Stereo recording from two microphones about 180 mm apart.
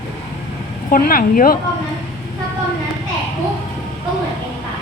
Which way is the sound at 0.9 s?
50° left (ahead or behind).